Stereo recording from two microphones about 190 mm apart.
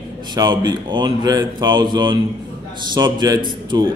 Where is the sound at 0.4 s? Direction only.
25° right (ahead or behind).